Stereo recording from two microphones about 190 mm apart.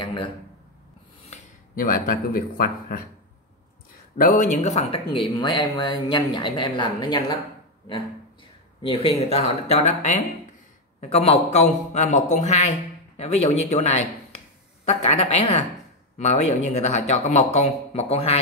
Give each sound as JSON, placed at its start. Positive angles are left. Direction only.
{"t": 0.0, "sound": "a sound", "side_deg": 25}
{"t": 1.3, "sound": "speech", "side_deg": 45}
{"t": 4.2, "sound": "speech", "side_deg": 45}
{"t": 8.8, "sound": "speech", "side_deg": 30}